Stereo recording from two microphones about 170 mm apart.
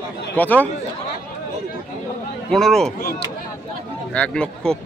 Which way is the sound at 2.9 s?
60° left (ahead or behind).